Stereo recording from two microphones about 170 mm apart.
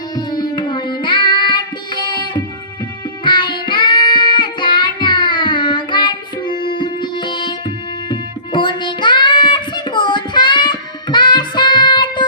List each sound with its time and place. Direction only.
0.2 s child singing: 25° left (ahead or behind)
3.2 s music: 25° left (ahead or behind)